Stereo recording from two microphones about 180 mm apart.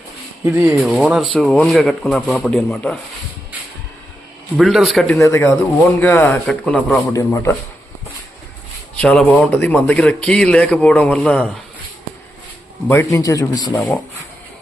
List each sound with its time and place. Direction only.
0.4 s speech: 10° right (ahead or behind)
4.5 s speech: centre (ahead or behind)
5.2 s speech: 15° left (ahead or behind)
9.0 s speech: 5° left (ahead or behind)
12.9 s speech: 15° left (ahead or behind)
13.7 s speech: 10° left (ahead or behind)